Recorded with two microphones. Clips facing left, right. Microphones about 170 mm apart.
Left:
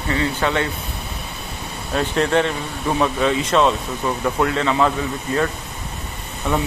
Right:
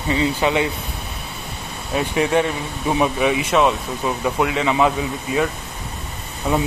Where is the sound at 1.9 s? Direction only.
10° right (ahead or behind).